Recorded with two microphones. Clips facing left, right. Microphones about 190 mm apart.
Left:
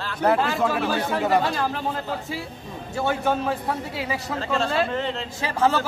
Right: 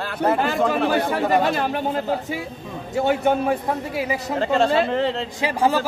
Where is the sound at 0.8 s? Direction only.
55° right (ahead or behind).